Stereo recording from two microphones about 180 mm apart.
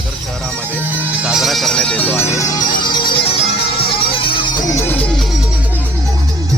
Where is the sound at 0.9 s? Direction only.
10° right (ahead or behind); by 4.2 s 30° left (ahead or behind).